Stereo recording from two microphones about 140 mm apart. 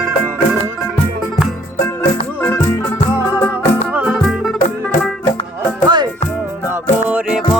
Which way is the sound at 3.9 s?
5° right (ahead or behind).